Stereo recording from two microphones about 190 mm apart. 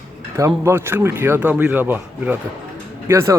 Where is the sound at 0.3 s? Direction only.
15° right (ahead or behind).